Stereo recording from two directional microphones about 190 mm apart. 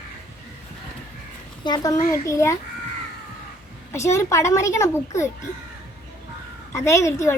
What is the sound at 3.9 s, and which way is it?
A child's voice, 15° left (ahead or behind).